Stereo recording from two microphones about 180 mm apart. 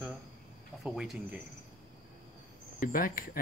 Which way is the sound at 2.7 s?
50° left (ahead or behind).